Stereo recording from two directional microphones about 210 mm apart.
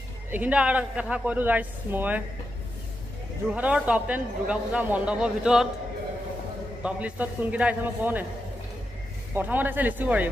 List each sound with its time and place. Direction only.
0.3 s speech: 5° right (ahead or behind)
3.5 s a man's voice: 5° right (ahead or behind)
6.8 s speech: 5° right (ahead or behind)
9.3 s speech: 10° right (ahead or behind)